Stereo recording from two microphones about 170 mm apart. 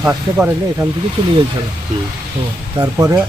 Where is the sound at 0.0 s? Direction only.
10° right (ahead or behind).